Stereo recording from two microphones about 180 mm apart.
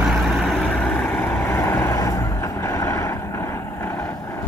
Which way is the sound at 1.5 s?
15° left (ahead or behind).